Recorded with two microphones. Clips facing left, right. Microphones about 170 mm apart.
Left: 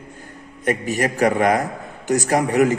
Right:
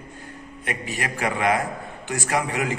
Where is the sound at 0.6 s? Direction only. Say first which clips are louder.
Left 9 dB; 40° left (ahead or behind).